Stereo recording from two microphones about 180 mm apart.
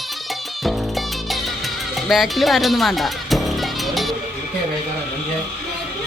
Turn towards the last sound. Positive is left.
turn(degrees=0)  # may be behind; listen again after turning